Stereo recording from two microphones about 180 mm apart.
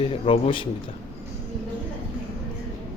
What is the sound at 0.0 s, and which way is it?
Speech, 30° left (ahead or behind).